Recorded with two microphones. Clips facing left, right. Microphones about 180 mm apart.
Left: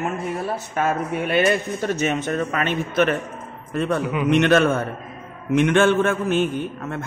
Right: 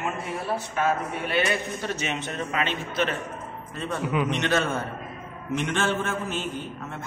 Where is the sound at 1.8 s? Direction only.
45° left (ahead or behind).